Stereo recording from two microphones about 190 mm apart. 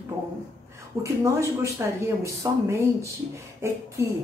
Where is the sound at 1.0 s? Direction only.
15° right (ahead or behind).